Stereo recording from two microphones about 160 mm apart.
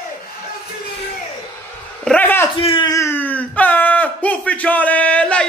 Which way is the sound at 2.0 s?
10° left (ahead or behind).